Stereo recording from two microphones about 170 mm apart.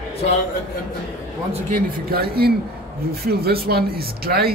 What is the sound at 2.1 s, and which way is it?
Speech, 65° right (ahead or behind).